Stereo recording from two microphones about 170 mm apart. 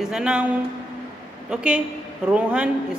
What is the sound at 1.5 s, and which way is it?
A woman's voice, 5° right (ahead or behind).